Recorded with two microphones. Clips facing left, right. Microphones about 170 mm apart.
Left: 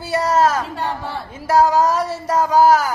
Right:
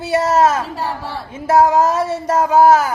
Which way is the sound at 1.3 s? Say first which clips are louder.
Right 2 dB; 25° right (ahead or behind).